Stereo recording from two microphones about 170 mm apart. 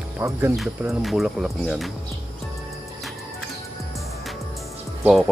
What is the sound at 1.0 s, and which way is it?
Speech, centre (ahead or behind).